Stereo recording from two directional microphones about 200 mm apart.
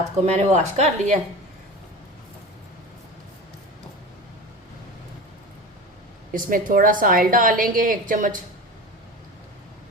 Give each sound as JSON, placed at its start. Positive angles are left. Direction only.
{"t": 0.3, "sound": "a woman's voice", "side_deg": -35}
{"t": 6.3, "sound": "a woman's voice", "side_deg": -45}